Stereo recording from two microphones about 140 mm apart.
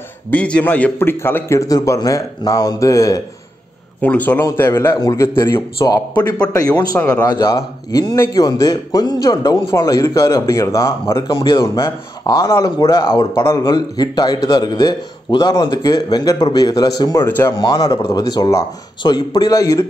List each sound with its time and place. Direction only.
0.3 s a man's voice: 10° left (ahead or behind)
4.0 s a man's voice: 10° left (ahead or behind); by 13.3 s 30° left (ahead or behind)
13.4 s a man's voice: 20° left (ahead or behind)